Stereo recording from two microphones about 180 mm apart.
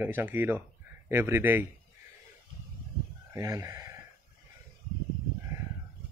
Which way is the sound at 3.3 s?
15° right (ahead or behind).